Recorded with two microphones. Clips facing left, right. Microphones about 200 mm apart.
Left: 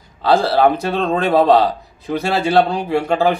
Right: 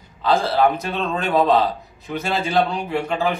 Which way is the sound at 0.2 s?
35° left (ahead or behind).